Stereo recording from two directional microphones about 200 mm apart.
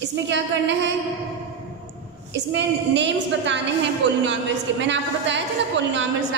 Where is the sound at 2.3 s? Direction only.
65° right (ahead or behind).